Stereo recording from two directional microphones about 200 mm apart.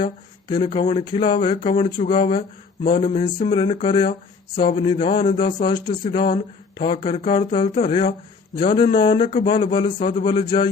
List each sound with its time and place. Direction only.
0.0 s speech: 25° left (ahead or behind)